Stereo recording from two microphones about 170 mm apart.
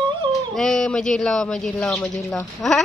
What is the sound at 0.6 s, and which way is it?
Speech, 5° left (ahead or behind).